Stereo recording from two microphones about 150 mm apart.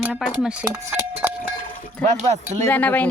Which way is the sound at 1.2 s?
15° right (ahead or behind).